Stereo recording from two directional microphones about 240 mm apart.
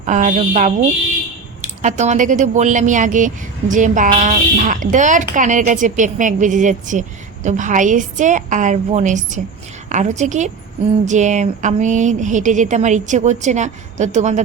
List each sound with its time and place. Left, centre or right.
0.0 s speech: right
1.8 s speech: right